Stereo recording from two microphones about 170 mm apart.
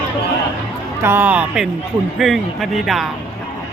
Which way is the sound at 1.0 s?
15° right (ahead or behind).